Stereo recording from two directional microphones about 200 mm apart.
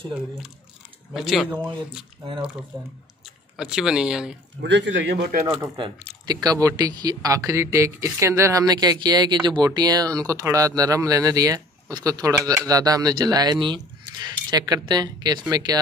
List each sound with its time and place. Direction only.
1.1 s speech: centre (ahead or behind)
3.5 s speech: 5° right (ahead or behind)
4.6 s a man's voice: 60° right (ahead or behind)
5.5 s speech: 20° right (ahead or behind)